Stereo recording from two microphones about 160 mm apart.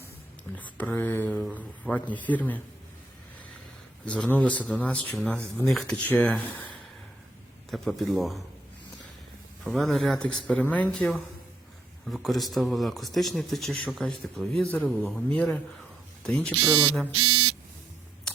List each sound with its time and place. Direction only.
0.5 s speech: 10° left (ahead or behind)
4.0 s speech: 5° left (ahead or behind)
7.7 s a man's voice: centre (ahead or behind)
9.6 s a man's voice: centre (ahead or behind)
16.6 s speech: 10° right (ahead or behind)